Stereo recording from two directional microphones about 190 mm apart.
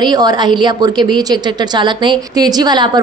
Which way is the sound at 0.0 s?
20° right (ahead or behind).